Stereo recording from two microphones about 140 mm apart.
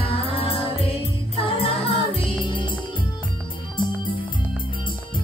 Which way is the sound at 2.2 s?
35° left (ahead or behind).